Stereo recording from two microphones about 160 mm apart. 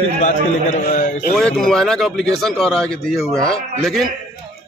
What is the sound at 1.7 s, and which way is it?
Speech, 5° left (ahead or behind).